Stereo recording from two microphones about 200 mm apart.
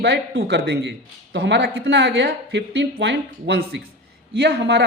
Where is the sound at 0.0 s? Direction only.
65° right (ahead or behind).